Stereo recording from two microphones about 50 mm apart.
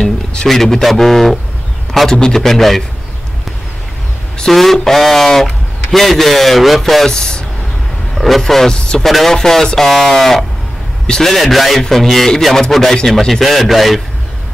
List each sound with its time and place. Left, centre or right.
0.0 s a sound: centre
0.5 s a man's voice: centre
4.5 s speech: centre
7.1 s speech: centre
8.2 s a man's voice: centre
11.3 s speech: centre